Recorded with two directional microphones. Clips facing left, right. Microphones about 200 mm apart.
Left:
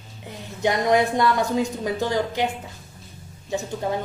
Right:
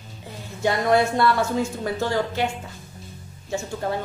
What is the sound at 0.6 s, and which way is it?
A woman's voice, 20° left (ahead or behind).